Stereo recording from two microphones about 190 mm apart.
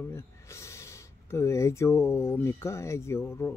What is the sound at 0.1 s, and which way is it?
Speech, 15° left (ahead or behind).